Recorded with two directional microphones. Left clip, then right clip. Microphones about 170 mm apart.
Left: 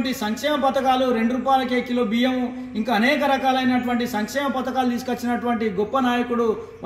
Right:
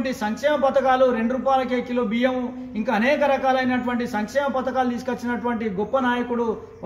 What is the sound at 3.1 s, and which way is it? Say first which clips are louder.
Speech: even; 5° right (ahead or behind).